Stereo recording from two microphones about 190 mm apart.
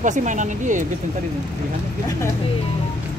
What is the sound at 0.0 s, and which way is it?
Speech, 40° right (ahead or behind).